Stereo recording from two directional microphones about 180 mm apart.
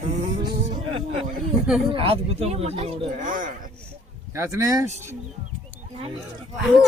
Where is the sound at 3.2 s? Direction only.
45° right (ahead or behind).